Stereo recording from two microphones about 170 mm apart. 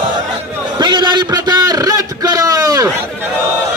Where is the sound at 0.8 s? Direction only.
25° right (ahead or behind).